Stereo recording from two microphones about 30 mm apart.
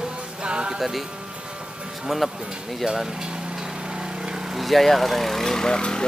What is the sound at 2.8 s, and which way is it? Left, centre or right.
Speech, centre.